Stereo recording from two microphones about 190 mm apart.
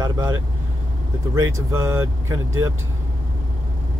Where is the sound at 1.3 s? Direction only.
15° right (ahead or behind).